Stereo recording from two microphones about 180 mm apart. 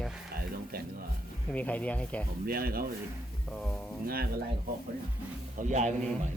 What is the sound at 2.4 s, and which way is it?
Speech, 55° right (ahead or behind).